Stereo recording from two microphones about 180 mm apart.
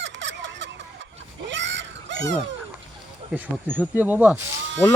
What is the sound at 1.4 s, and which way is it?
Screaming, 90° right.